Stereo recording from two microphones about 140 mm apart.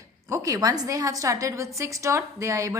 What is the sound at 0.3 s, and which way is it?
A woman's voice, 20° right (ahead or behind).